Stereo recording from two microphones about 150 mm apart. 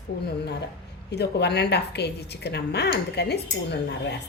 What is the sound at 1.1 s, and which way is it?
A woman's voice, 90° left.